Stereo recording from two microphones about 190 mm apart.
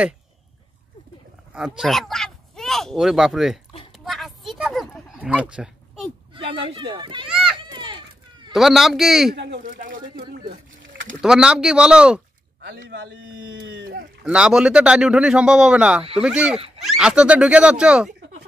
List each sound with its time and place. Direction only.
1.8 s speech: centre (ahead or behind)
4.0 s a sound: centre (ahead or behind)
6.3 s speech: 25° right (ahead or behind)
7.5 s a sound: 25° right (ahead or behind)
8.5 s a man's voice: centre (ahead or behind)
9.3 s speech: 65° right (ahead or behind)
9.6 s speech: 45° right (ahead or behind)
11.1 s a man's voice: 5° right (ahead or behind)
12.6 s a man's voice: 70° right (ahead or behind)
14.2 s a man's voice: 5° right (ahead or behind)
16.5 s a sound: 30° right (ahead or behind)
16.8 s a man's voice: 5° right (ahead or behind)